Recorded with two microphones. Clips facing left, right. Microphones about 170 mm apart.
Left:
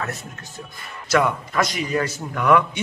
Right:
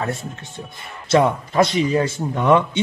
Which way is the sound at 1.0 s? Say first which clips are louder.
Right 4 dB; 25° right (ahead or behind).